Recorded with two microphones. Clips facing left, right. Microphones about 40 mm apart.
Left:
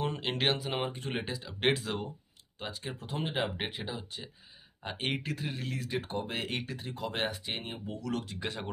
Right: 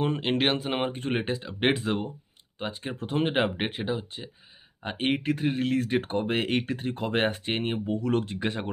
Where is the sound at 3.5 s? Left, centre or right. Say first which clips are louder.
Right 7 dB; right.